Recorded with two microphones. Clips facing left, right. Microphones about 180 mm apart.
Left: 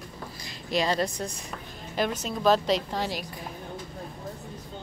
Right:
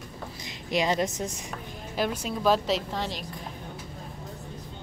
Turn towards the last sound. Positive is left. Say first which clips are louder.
# left 2 dB
turn(degrees=5)  # may be behind; listen again after turning